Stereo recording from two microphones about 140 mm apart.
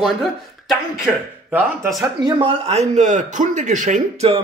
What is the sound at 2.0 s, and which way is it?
Speech, 25° right (ahead or behind).